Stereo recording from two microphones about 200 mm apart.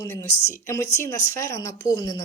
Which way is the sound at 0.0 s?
15° left (ahead or behind).